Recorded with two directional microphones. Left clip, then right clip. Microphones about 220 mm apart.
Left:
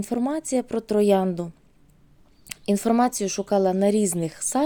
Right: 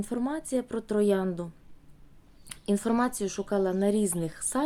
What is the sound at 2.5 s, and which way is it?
Speech, 25° left (ahead or behind).